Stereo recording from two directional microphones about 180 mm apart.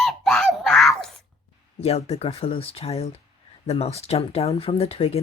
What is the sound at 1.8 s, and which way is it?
Speech, 35° left (ahead or behind).